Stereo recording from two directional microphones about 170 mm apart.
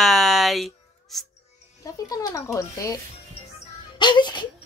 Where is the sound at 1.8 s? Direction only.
20° left (ahead or behind).